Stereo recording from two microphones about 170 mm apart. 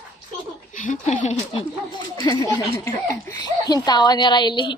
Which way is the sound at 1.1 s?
35° left (ahead or behind).